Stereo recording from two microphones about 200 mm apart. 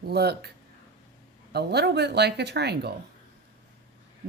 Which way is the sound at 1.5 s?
55° right (ahead or behind).